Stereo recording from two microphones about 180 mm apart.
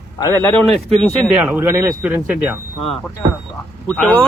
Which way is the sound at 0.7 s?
35° right (ahead or behind).